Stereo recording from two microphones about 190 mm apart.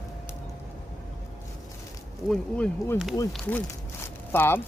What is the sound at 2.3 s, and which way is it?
Speech, 5° left (ahead or behind).